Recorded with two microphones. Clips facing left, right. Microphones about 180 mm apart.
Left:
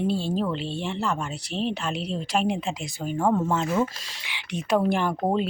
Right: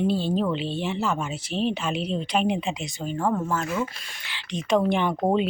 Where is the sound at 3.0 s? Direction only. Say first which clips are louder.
Left 2 dB; 10° left (ahead or behind).